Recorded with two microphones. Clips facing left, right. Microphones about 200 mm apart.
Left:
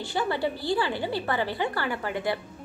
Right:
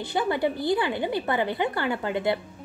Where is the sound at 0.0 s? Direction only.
20° right (ahead or behind).